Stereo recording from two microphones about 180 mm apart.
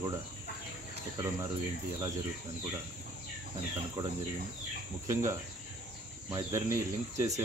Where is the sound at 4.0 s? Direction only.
25° right (ahead or behind).